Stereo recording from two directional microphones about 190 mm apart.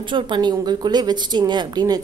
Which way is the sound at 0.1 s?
25° right (ahead or behind).